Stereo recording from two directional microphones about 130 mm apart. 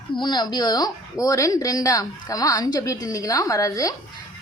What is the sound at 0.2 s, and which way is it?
Speech, 35° left (ahead or behind).